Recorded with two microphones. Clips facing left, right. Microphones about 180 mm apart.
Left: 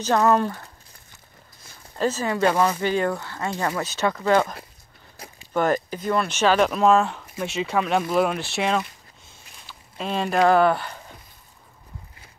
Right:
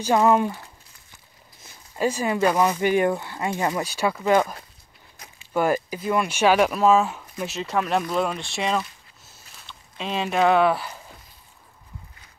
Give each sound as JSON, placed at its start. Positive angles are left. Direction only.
{"t": 0.0, "sound": "speech", "side_deg": -10}
{"t": 1.6, "sound": "speech", "side_deg": -15}